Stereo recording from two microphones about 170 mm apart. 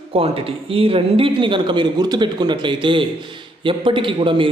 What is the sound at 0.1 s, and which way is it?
A man's voice, 35° right (ahead or behind).